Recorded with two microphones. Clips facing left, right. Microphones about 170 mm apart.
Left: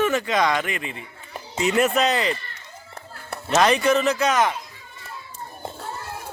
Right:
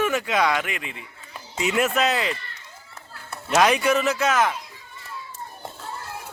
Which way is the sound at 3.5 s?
5° right (ahead or behind).